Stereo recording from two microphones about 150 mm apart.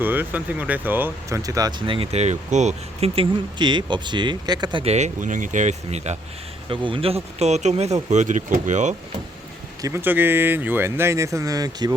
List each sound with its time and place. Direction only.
0.0 s speech: 10° right (ahead or behind)
1.4 s speech: 25° right (ahead or behind)
1.9 s speech: 40° right (ahead or behind)
6.7 s speech: 35° right (ahead or behind); by 9.0 s 50° right (ahead or behind)
9.8 s speech: 15° right (ahead or behind)